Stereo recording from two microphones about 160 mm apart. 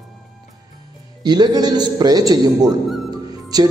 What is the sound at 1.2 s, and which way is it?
A man's voice, 25° right (ahead or behind).